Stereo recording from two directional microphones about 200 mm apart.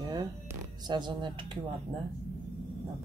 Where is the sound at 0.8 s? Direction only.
20° right (ahead or behind).